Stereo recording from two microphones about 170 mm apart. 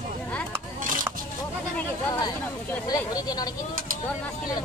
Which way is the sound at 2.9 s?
20° left (ahead or behind).